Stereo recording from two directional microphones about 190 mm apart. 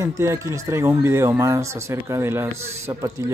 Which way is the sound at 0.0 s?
15° right (ahead or behind).